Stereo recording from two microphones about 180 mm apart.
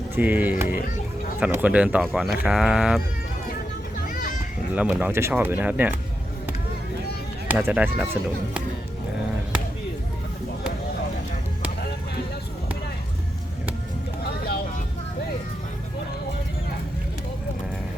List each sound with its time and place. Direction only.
0.2 s speech: 10° right (ahead or behind)
0.7 s speech: 50° left (ahead or behind)
1.4 s speech: 10° right (ahead or behind)
4.1 s children playing: 50° left (ahead or behind)
4.7 s speech: 10° right (ahead or behind)
7.4 s speech: 10° right (ahead or behind)